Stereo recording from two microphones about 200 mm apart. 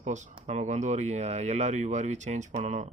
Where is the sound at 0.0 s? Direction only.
35° right (ahead or behind).